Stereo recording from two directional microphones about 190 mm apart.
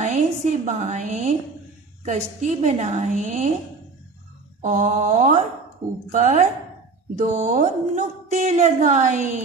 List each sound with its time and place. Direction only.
0.0 s a woman's voice: 40° right (ahead or behind)
4.6 s a woman's voice: 40° right (ahead or behind)